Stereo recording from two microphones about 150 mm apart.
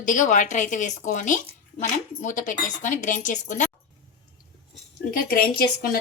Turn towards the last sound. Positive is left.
turn(degrees=75)  # may be behind; listen again after turning